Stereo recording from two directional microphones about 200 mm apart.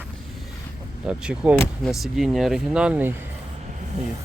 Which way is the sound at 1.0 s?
5° right (ahead or behind).